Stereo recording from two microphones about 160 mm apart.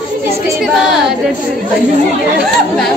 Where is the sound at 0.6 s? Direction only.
Centre (ahead or behind).